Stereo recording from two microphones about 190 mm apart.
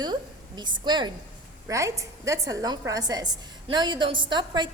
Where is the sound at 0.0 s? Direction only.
20° right (ahead or behind).